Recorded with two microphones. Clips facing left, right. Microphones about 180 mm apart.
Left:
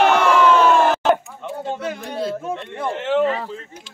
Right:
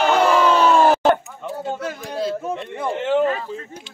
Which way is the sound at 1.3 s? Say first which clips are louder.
Even; centre (ahead or behind).